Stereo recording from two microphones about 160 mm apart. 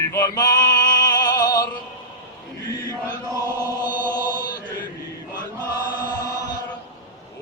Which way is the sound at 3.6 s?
25° left (ahead or behind).